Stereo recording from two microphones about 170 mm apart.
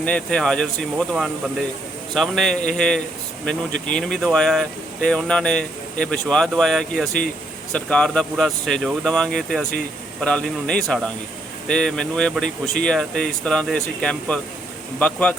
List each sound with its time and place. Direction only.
0.0 s speech: 5° left (ahead or behind)